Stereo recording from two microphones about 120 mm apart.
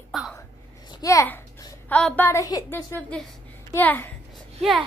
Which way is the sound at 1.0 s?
25° left (ahead or behind).